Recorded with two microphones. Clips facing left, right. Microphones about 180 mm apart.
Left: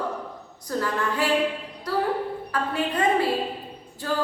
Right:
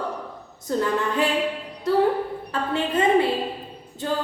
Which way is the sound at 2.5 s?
25° right (ahead or behind).